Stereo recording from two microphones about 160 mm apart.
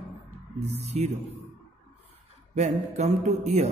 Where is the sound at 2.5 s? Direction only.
45° right (ahead or behind).